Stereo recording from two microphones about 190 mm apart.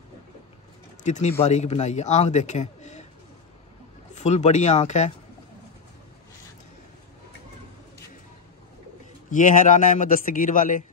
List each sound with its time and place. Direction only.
1.0 s speech: 40° left (ahead or behind)
4.1 s speech: 35° left (ahead or behind)
9.3 s a man's voice: 45° left (ahead or behind)